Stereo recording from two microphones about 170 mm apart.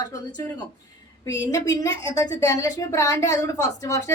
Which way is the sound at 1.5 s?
20° left (ahead or behind).